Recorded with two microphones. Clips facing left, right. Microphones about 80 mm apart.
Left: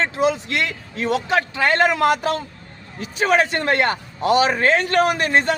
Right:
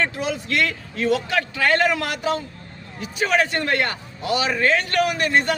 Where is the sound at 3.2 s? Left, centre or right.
Left.